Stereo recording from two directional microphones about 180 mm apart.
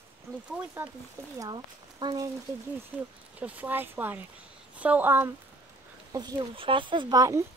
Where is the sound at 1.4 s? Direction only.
25° right (ahead or behind).